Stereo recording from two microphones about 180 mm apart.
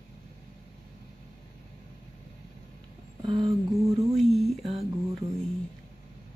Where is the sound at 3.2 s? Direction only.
25° right (ahead or behind).